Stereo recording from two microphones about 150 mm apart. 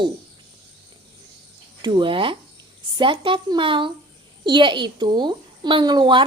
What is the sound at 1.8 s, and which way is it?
A woman's voice, 30° right (ahead or behind).